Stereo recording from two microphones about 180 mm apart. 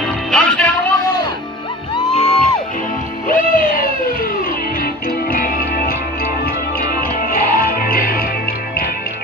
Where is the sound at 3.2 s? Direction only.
50° left (ahead or behind).